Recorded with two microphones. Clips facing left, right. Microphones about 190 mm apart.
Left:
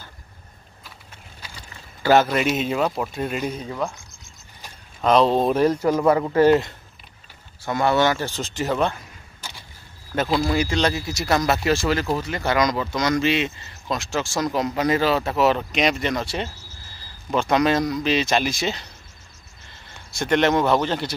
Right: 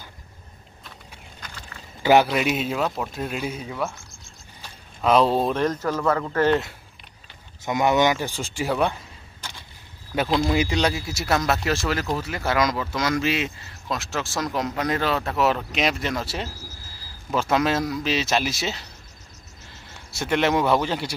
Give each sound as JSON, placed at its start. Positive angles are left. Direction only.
{"t": 2.2, "sound": "speech", "side_deg": 0}
{"t": 3.7, "sound": "speech", "side_deg": 15}
{"t": 5.0, "sound": "speech", "side_deg": -5}
{"t": 5.5, "sound": "speech", "side_deg": 10}
{"t": 7.6, "sound": "speech", "side_deg": -15}
{"t": 10.1, "sound": "speech", "side_deg": -10}